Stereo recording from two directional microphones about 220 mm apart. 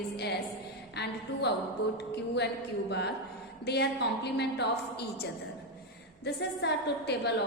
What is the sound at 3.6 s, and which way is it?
A woman's voice, 50° left (ahead or behind).